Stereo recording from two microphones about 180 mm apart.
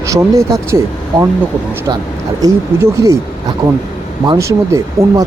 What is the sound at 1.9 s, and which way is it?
Speech, 25° right (ahead or behind).